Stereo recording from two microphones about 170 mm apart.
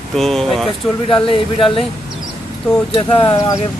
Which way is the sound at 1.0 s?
30° left (ahead or behind).